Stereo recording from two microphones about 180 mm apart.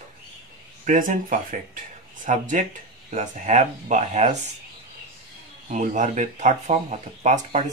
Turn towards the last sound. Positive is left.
turn(degrees=-40)  # may be behind; listen again after turning